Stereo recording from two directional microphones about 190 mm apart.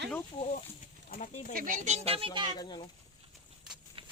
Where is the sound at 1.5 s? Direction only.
45° right (ahead or behind); by 2.6 s 25° right (ahead or behind).